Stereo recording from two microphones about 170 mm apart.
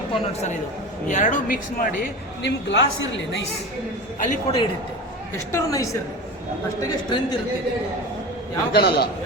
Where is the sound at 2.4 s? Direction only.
90° left.